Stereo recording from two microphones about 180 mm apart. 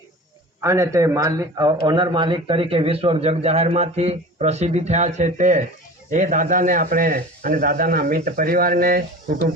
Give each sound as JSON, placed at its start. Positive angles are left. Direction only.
{"t": 0.6, "sound": "a man's voice", "side_deg": -15}